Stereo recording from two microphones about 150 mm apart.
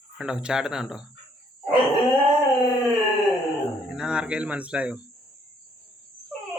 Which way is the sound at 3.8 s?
5° right (ahead or behind).